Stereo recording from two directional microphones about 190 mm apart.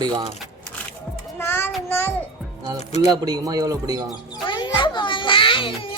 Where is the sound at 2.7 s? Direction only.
35° left (ahead or behind).